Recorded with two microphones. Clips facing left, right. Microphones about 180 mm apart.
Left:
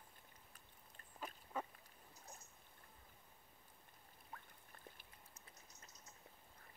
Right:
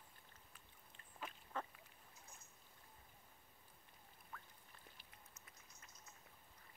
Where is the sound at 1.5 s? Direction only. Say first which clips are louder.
Left 2 dB; 10° left (ahead or behind).